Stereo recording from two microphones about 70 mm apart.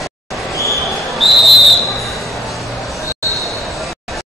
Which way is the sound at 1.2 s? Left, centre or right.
Centre.